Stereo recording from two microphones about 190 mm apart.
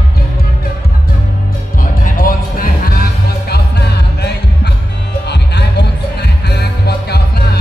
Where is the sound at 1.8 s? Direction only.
50° left (ahead or behind).